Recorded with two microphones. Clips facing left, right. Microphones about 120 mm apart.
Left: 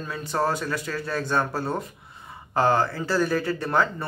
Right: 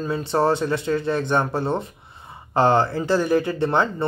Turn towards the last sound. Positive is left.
turn(degrees=-25)  # may be behind; listen again after turning